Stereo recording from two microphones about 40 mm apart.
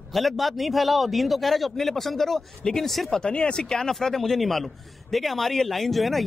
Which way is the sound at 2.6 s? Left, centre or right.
Centre.